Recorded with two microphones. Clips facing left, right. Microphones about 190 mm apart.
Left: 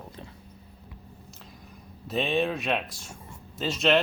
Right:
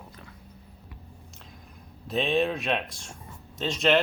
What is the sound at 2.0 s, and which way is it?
Speech, centre (ahead or behind).